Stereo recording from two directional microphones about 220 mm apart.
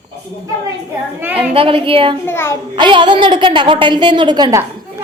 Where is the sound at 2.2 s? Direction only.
10° left (ahead or behind).